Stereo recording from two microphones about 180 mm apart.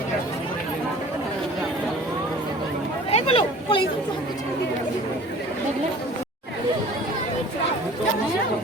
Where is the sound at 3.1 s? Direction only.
30° left (ahead or behind).